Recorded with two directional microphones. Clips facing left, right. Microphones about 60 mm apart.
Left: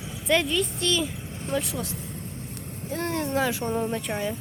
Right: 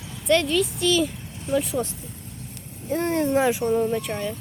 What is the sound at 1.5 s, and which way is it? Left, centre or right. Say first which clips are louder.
Speech: right 5 dB; left.